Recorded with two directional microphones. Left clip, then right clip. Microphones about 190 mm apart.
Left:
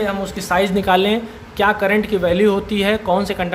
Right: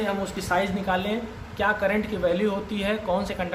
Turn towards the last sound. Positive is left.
turn(degrees=35)  # may be behind; listen again after turning